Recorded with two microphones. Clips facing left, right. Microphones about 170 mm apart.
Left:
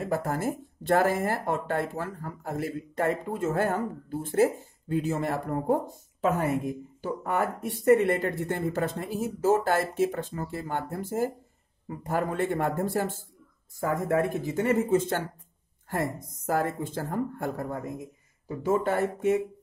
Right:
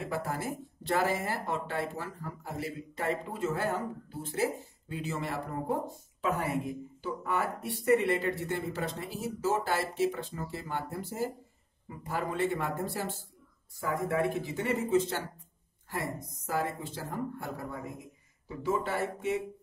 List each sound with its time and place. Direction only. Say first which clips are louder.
0.0 s speech: left 6 dB; 45° left (ahead or behind)